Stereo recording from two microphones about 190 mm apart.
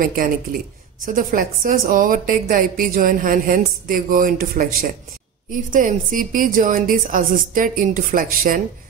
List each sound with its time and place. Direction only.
0.0 s a woman's voice: 50° right (ahead or behind)